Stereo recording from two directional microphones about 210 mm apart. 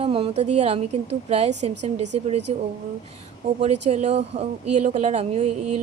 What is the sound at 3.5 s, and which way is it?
Speech, 30° right (ahead or behind).